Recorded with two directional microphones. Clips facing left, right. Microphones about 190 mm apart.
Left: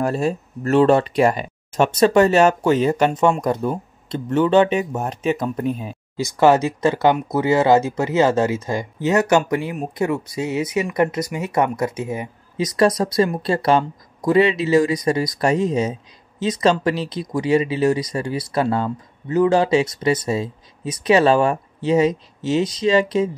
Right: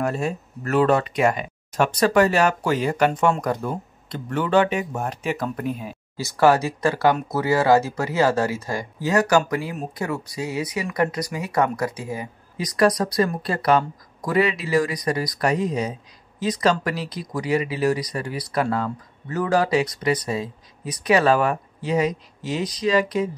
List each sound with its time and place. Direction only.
0.0 s speech: 35° left (ahead or behind)